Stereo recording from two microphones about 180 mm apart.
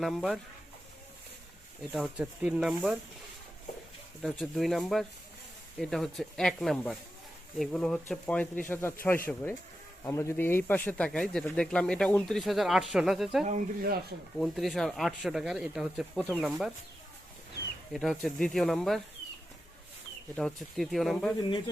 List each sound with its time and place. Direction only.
0.0 s speech: centre (ahead or behind)
1.9 s speech: 5° right (ahead or behind)
4.2 s speech: centre (ahead or behind)
13.4 s speech: 45° right (ahead or behind)
14.3 s speech: centre (ahead or behind)
17.9 s speech: centre (ahead or behind)
20.3 s speech: centre (ahead or behind)